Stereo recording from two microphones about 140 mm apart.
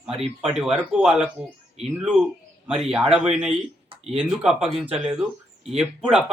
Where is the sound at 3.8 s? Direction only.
45° right (ahead or behind).